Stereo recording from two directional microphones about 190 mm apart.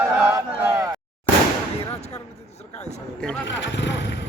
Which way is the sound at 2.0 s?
35° left (ahead or behind).